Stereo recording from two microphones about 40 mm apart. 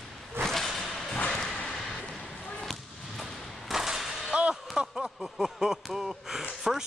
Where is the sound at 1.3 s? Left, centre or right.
Centre.